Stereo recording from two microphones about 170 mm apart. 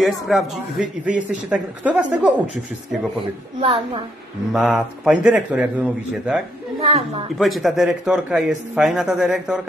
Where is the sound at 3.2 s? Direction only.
30° right (ahead or behind).